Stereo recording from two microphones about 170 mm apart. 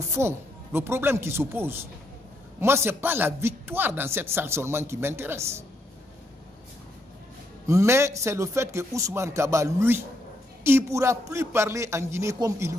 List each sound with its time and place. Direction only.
0.1 s a man's voice: 15° right (ahead or behind)
7.6 s a man's voice: 15° right (ahead or behind)